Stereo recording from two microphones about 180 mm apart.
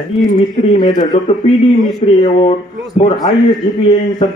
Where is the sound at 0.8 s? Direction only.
25° left (ahead or behind).